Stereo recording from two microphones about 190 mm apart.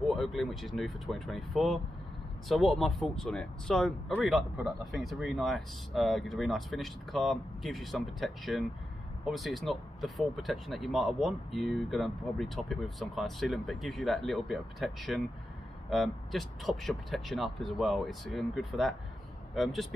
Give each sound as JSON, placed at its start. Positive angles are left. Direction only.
{"t": 0.0, "sound": "speech", "side_deg": 0}